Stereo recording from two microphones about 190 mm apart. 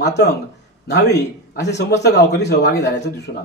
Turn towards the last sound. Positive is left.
turn(degrees=65)  # may be behind; listen again after turning